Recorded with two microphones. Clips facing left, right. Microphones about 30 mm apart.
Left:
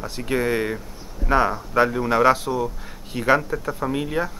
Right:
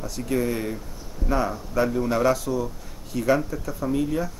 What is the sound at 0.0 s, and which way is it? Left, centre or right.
Speech, left.